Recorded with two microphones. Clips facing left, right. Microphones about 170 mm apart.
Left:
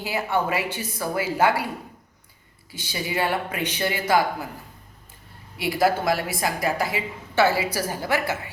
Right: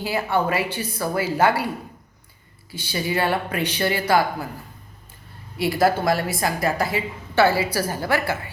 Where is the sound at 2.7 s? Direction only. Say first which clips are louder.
Right 3 dB; 20° left (ahead or behind).